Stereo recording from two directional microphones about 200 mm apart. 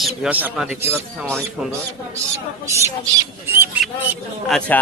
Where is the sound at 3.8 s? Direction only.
Centre (ahead or behind).